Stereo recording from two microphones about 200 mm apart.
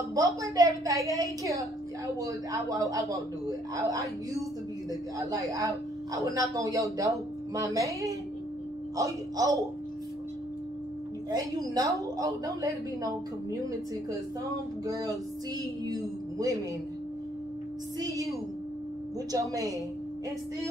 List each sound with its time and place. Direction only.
0.1 s speech: 15° right (ahead or behind)
11.2 s speech: 20° right (ahead or behind)
15.9 s music: 15° right (ahead or behind)
17.9 s speech: 15° right (ahead or behind)